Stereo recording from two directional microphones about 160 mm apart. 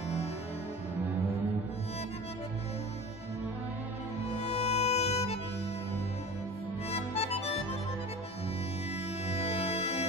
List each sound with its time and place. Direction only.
4.4 s music: 40° left (ahead or behind)
6.9 s music: 40° left (ahead or behind)
9.3 s music: 40° left (ahead or behind)